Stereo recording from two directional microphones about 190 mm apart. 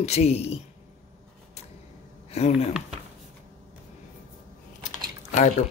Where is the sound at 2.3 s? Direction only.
35° left (ahead or behind).